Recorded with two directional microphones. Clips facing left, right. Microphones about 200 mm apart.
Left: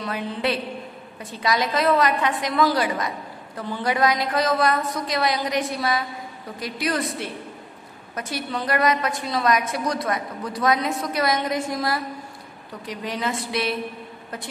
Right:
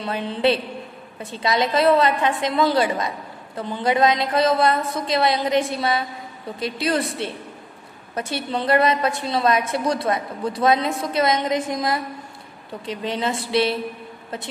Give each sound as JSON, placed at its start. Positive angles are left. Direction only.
{"t": 0.0, "sound": "a woman's voice", "side_deg": -25}